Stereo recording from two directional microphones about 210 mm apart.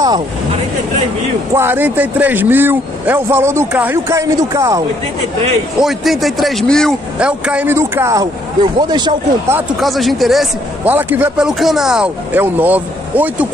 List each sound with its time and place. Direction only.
1.5 s a man's voice: 10° right (ahead or behind)
5.8 s a man's voice: centre (ahead or behind); by 9.6 s 20° right (ahead or behind)
9.6 s speech: centre (ahead or behind)